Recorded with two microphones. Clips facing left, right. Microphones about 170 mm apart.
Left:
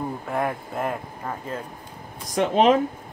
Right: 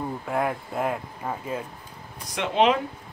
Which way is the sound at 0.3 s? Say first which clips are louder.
Right 1 dB; centre (ahead or behind).